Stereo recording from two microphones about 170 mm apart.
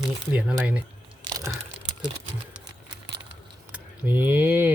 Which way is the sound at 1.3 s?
20° right (ahead or behind).